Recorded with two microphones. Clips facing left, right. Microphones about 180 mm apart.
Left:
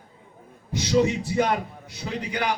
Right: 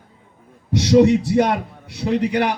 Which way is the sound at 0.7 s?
70° right (ahead or behind).